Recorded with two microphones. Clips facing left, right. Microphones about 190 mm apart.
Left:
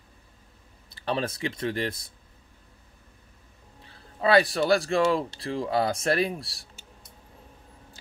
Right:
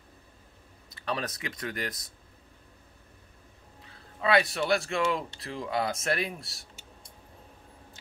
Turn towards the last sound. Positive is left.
turn(degrees=35)  # may be behind; listen again after turning